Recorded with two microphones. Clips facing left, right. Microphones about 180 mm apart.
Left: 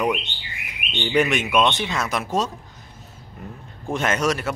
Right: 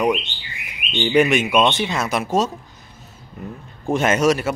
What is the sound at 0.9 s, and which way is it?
Speech, 5° right (ahead or behind).